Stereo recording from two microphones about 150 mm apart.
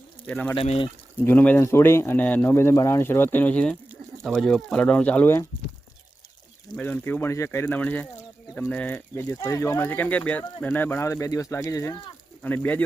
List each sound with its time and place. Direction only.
0.3 s speech: 10° left (ahead or behind)
0.5 s speech: 40° left (ahead or behind)
1.2 s speech: 10° left (ahead or behind)
6.7 s speech: 10° left (ahead or behind)
12.4 s speech: 10° left (ahead or behind)